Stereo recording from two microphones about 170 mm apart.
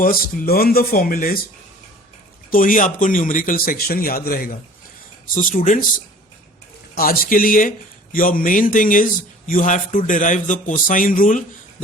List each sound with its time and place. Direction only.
0.0 s a man's voice: 60° left (ahead or behind)
2.5 s a man's voice: 50° left (ahead or behind)
6.9 s a man's voice: 60° left (ahead or behind)